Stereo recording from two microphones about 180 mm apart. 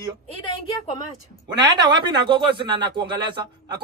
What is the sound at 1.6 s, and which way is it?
Speech, 25° right (ahead or behind).